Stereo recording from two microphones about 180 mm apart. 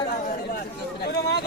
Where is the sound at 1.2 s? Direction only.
65° left (ahead or behind).